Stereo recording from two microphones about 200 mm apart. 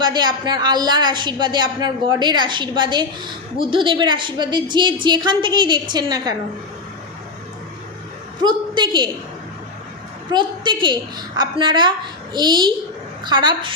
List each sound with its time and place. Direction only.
0.0 s speech: 20° right (ahead or behind)
8.4 s a sound: 25° right (ahead or behind)
10.3 s speech: 25° right (ahead or behind)